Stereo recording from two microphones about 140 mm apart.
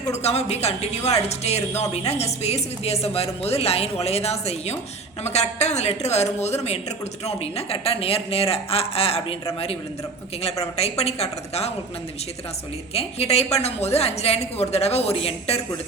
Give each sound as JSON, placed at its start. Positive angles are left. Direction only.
{"t": 0.1, "sound": "speech", "side_deg": 50}
{"t": 12.9, "sound": "speech", "side_deg": 45}